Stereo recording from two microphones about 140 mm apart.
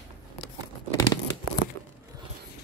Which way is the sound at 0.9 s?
25° left (ahead or behind).